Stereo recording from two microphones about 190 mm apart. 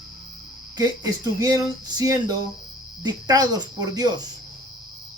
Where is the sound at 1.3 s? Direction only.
15° right (ahead or behind).